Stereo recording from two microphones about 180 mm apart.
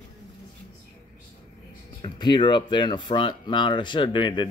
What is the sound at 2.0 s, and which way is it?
Speech, 25° left (ahead or behind).